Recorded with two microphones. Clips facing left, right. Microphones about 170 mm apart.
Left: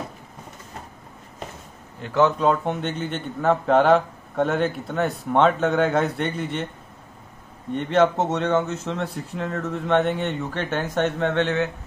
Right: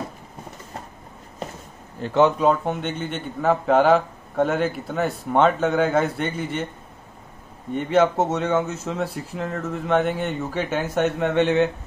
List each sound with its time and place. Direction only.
2.0 s a man's voice: 35° right (ahead or behind)
2.4 s a man's voice: 5° right (ahead or behind)
7.7 s a man's voice: 5° right (ahead or behind)